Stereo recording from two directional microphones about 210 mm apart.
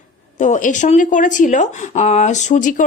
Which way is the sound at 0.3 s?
35° left (ahead or behind).